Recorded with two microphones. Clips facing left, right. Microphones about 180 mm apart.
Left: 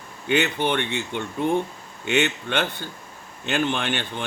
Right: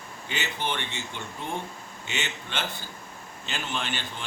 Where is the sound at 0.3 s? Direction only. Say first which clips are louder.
Left 10 dB; 60° left (ahead or behind).